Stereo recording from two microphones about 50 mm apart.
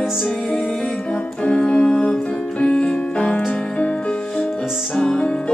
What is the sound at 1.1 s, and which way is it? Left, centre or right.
Music, left.